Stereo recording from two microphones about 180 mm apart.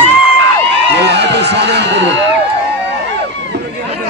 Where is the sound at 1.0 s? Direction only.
70° right (ahead or behind).